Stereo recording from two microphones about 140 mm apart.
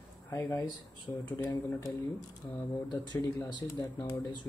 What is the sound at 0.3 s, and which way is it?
Speech, 20° left (ahead or behind).